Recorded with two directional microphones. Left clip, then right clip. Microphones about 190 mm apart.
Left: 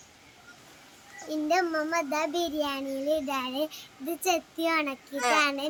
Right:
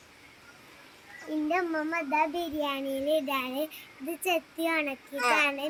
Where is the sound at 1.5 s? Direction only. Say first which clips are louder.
Left 4 dB; 5° left (ahead or behind).